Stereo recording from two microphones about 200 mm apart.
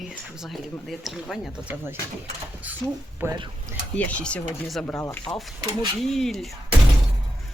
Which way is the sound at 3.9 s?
5° left (ahead or behind).